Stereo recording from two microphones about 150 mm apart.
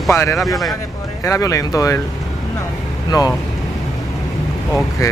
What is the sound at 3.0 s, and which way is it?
Speech, 25° left (ahead or behind).